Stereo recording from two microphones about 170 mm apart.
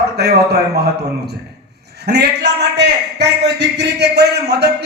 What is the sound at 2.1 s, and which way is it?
A man's voice, 75° right (ahead or behind).